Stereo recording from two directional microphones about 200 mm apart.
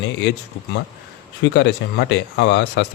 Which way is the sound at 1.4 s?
60° left (ahead or behind).